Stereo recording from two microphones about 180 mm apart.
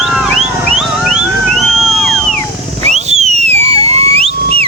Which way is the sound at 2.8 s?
35° right (ahead or behind).